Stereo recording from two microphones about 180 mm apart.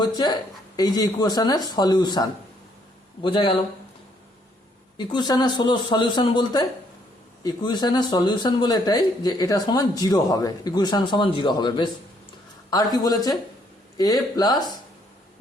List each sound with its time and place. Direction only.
0.0 s speech: 25° left (ahead or behind)
3.2 s speech: 30° left (ahead or behind)
4.9 s speech: 25° left (ahead or behind)